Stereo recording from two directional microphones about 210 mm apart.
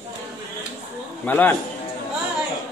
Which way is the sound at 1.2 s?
10° left (ahead or behind).